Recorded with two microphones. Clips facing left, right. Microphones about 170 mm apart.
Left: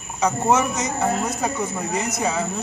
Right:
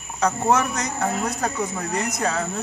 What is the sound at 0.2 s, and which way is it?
A man's voice, 5° left (ahead or behind).